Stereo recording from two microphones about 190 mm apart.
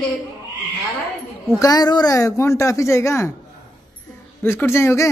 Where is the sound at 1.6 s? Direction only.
20° left (ahead or behind).